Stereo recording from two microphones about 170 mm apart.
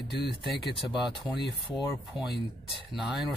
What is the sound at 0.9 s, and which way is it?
Speech, centre (ahead or behind).